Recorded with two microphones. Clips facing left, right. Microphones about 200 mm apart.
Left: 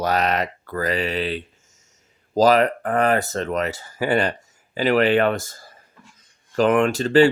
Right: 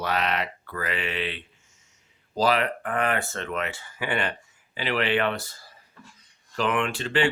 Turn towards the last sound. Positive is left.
turn(degrees=40)  # may be behind; listen again after turning